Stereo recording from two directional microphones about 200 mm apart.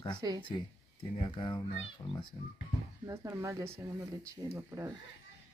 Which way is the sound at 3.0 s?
15° right (ahead or behind).